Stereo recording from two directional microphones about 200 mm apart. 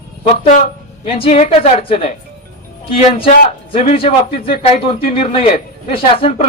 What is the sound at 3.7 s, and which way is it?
A man's voice, 30° left (ahead or behind).